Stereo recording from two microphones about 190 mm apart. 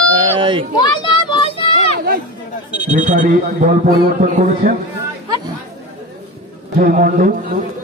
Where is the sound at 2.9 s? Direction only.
40° right (ahead or behind).